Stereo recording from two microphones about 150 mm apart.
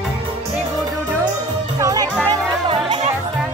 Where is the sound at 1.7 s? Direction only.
25° right (ahead or behind).